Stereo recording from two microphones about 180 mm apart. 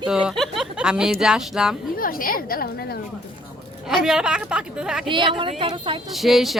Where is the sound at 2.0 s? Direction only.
50° left (ahead or behind).